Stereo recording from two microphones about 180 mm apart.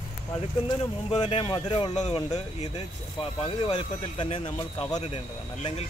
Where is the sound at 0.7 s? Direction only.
30° left (ahead or behind).